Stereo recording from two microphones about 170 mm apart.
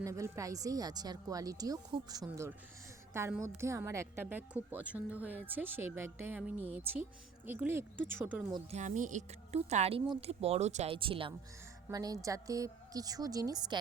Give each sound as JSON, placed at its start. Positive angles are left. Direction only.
{"t": 0.0, "sound": "a woman's voice", "side_deg": -20}
{"t": 8.7, "sound": "speech", "side_deg": -45}
{"t": 10.9, "sound": "speech", "side_deg": -30}
{"t": 11.9, "sound": "speech", "side_deg": -20}